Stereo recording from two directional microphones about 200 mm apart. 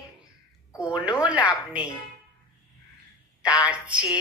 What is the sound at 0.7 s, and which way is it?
A woman's voice, 20° left (ahead or behind).